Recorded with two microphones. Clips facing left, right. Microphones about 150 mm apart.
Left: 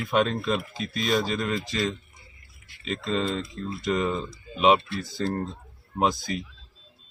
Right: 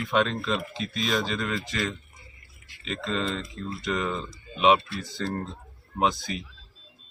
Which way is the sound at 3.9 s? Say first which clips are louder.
Left 3 dB; 5° left (ahead or behind).